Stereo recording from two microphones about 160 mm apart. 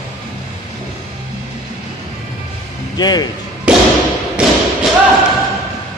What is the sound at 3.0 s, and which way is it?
Speech, 25° left (ahead or behind).